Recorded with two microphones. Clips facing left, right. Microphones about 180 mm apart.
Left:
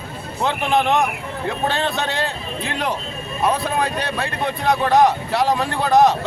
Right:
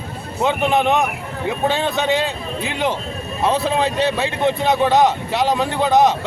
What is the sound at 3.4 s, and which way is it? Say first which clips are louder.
Speech: right 2 dB; 25° right (ahead or behind).